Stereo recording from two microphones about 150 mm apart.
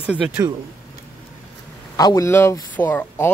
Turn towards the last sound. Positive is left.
turn(degrees=15)  # may be behind; listen again after turning